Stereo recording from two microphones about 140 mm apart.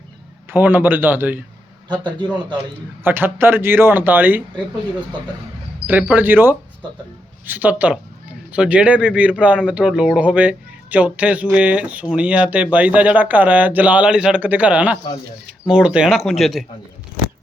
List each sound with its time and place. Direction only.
0.5 s speech: 15° right (ahead or behind)
3.0 s speech: 15° right (ahead or behind)
5.9 s speech: 10° right (ahead or behind)